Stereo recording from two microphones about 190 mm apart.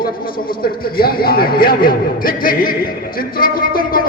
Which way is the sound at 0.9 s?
50° left (ahead or behind).